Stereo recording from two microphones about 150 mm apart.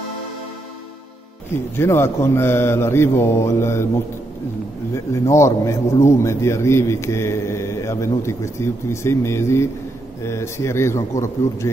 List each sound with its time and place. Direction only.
1.5 s speech: 15° left (ahead or behind)
4.9 s a man's voice: 20° left (ahead or behind)